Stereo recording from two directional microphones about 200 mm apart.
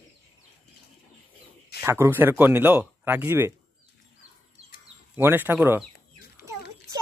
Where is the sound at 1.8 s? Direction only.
10° right (ahead or behind).